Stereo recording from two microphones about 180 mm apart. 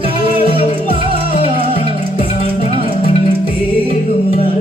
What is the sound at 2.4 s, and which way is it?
Music, 30° right (ahead or behind).